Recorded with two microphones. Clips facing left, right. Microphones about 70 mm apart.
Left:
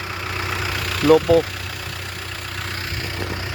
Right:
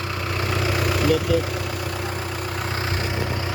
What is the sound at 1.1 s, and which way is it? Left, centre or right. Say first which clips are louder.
Speech: left 9 dB; left.